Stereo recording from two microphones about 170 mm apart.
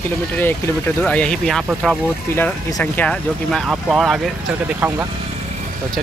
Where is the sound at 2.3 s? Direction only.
10° left (ahead or behind).